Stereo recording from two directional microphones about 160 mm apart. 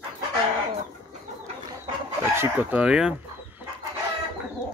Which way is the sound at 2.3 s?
10° right (ahead or behind).